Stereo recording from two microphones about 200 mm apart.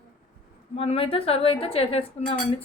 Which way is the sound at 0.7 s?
30° left (ahead or behind).